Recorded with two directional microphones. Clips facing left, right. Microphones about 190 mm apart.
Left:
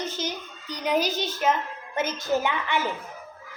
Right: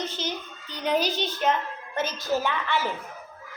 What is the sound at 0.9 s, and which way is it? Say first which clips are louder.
Speech: left 1 dB; 45° left (ahead or behind).